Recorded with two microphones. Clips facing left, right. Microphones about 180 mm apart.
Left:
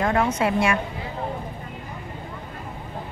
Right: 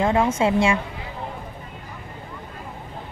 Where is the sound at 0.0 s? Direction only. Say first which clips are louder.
Right 2 dB; 20° right (ahead or behind).